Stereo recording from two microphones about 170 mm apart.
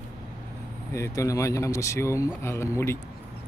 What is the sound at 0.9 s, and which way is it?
Speech, 15° left (ahead or behind).